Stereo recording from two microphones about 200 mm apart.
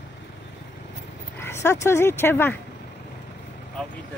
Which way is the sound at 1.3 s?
10° left (ahead or behind).